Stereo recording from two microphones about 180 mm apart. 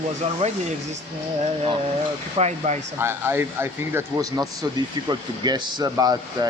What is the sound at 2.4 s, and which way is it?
Speech, 40° right (ahead or behind).